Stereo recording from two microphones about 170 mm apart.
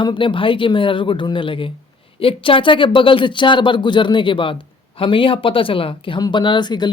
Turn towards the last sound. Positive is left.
turn(degrees=25)  # may be behind; listen again after turning